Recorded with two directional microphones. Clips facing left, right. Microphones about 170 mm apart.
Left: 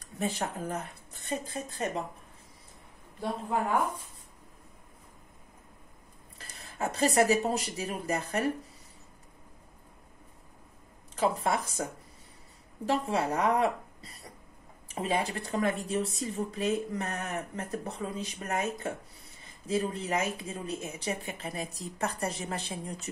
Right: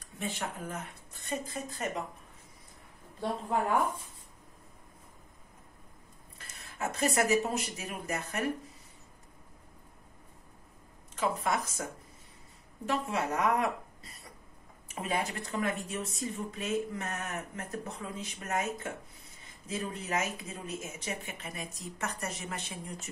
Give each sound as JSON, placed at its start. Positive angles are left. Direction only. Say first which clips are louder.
{"t": 0.0, "sound": "speech", "louder": "left 5 dB", "side_deg": 35}
{"t": 6.3, "sound": "speech", "louder": "left 4 dB", "side_deg": 35}
{"t": 11.1, "sound": "a woman's voice", "louder": "left 3 dB", "side_deg": 35}
{"t": 14.9, "sound": "a sound", "louder": "left 4 dB", "side_deg": 30}
{"t": 15.4, "sound": "speech", "louder": "left 4 dB", "side_deg": 30}